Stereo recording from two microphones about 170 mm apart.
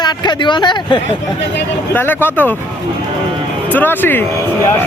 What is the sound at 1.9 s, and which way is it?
Speech, 10° left (ahead or behind).